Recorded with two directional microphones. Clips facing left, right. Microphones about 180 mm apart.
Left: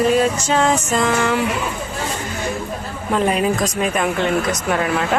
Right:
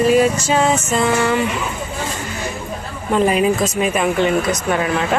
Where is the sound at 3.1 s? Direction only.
5° right (ahead or behind).